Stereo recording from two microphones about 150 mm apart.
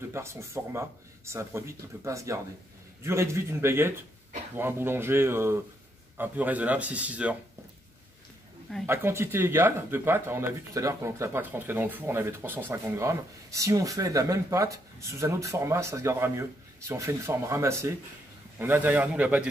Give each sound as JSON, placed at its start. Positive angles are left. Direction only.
{"t": 0.1, "sound": "speech", "side_deg": -15}
{"t": 8.8, "sound": "speech", "side_deg": -15}